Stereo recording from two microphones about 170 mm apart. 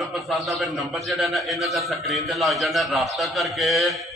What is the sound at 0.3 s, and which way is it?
A man's voice, centre (ahead or behind).